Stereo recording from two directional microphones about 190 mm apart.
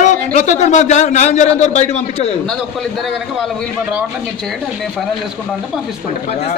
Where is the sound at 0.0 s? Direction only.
40° left (ahead or behind).